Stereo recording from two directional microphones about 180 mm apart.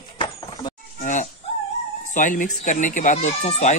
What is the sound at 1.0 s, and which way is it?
Speech, 45° left (ahead or behind).